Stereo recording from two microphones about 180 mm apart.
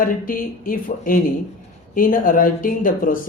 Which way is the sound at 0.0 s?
50° left (ahead or behind).